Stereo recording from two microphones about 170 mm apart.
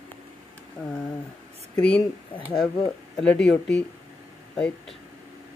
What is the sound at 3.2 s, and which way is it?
Speech, 5° left (ahead or behind).